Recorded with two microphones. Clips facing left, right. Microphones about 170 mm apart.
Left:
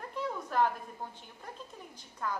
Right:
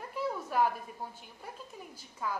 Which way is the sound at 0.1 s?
10° right (ahead or behind).